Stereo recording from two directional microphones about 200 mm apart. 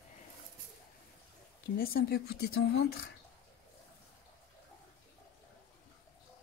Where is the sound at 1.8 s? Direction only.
50° left (ahead or behind).